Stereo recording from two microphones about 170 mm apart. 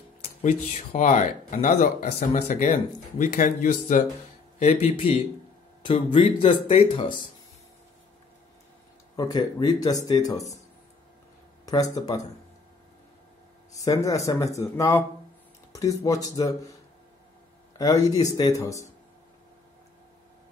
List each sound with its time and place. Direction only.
0.2 s a sound: 45° left (ahead or behind)
0.7 s speech: 45° left (ahead or behind)
2.1 s speech: 35° left (ahead or behind)
3.2 s speech: 55° left (ahead or behind)
4.6 s speech: 35° left (ahead or behind)
5.8 s a sound: 30° left (ahead or behind)
6.2 s speech: 30° left (ahead or behind)
9.1 s speech: 25° left (ahead or behind)
11.6 s speech: 20° left (ahead or behind)
13.7 s speech: 20° left (ahead or behind)
17.7 s speech: 20° left (ahead or behind)